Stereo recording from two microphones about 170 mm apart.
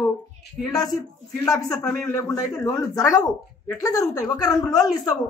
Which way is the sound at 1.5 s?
15° left (ahead or behind).